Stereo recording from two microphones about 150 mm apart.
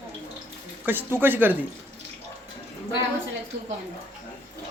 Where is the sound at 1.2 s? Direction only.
15° right (ahead or behind).